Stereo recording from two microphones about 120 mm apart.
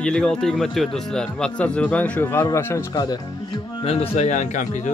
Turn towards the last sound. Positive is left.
turn(degrees=85)